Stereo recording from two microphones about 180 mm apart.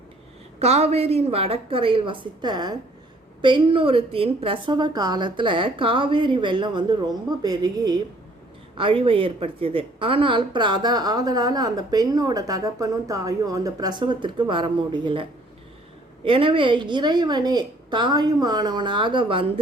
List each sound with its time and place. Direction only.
0.6 s a woman's voice: 35° right (ahead or behind)